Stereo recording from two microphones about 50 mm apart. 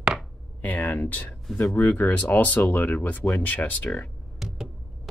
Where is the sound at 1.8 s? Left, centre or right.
Left.